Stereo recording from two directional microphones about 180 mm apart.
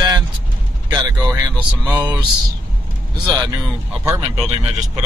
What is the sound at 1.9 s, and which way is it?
Speech, 20° right (ahead or behind).